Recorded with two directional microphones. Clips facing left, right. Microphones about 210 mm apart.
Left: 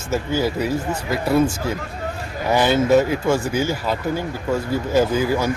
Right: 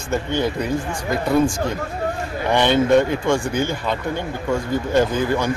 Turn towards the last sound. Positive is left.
turn(degrees=5)  # may be behind; listen again after turning